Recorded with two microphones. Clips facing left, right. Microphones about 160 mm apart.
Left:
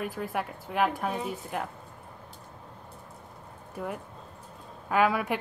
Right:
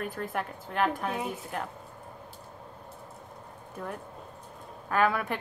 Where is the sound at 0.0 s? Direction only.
5° left (ahead or behind).